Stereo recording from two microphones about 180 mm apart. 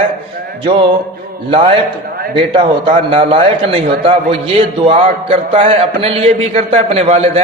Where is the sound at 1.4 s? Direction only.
30° right (ahead or behind).